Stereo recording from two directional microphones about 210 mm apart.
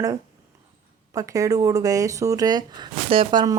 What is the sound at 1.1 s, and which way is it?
Speech, 15° right (ahead or behind).